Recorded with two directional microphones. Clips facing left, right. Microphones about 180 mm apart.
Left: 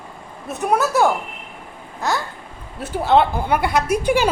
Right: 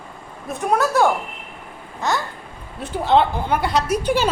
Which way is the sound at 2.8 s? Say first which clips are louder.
Left 1 dB; 5° left (ahead or behind).